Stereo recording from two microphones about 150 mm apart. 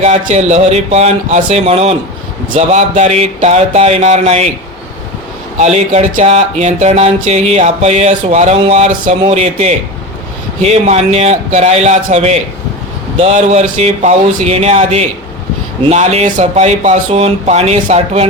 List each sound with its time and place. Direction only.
0.0 s speech: 50° right (ahead or behind)
5.5 s speech: 45° right (ahead or behind)